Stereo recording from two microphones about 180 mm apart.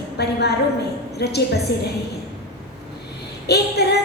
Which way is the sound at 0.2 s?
65° left (ahead or behind).